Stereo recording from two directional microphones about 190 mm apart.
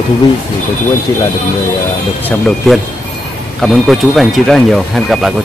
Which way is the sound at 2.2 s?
Centre (ahead or behind).